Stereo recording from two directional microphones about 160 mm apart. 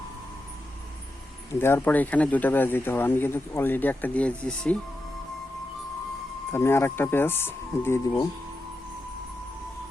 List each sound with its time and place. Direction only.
1.5 s speech: 15° left (ahead or behind)
6.5 s speech: 15° left (ahead or behind)